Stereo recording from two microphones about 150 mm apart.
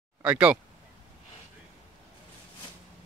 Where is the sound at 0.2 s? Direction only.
5° right (ahead or behind).